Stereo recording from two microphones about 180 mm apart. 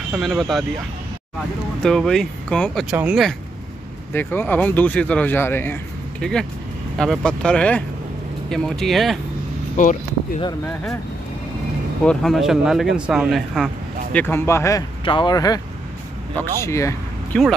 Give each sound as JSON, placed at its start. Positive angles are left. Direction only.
{"t": 0.1, "sound": "speech", "side_deg": 0}
{"t": 1.8, "sound": "speech", "side_deg": 5}
{"t": 2.9, "sound": "speech", "side_deg": -5}
{"t": 4.1, "sound": "speech", "side_deg": 10}
{"t": 7.0, "sound": "speech", "side_deg": 5}
{"t": 9.8, "sound": "speech", "side_deg": 45}
{"t": 12.0, "sound": "speech", "side_deg": 5}
{"t": 14.1, "sound": "speech", "side_deg": 10}